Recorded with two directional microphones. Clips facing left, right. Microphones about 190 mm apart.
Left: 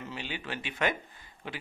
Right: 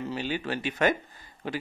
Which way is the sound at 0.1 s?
40° right (ahead or behind).